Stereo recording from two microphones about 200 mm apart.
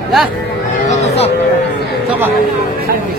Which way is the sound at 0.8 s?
35° left (ahead or behind).